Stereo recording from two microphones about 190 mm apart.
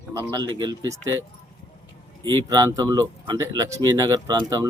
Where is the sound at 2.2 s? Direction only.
20° right (ahead or behind).